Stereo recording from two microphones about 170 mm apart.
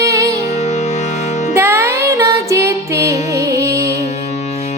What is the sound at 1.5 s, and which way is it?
Music, 15° right (ahead or behind).